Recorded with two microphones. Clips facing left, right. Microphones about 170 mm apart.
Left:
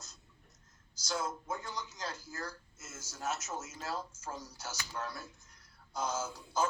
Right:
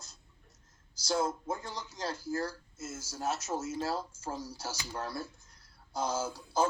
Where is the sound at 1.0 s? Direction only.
30° right (ahead or behind).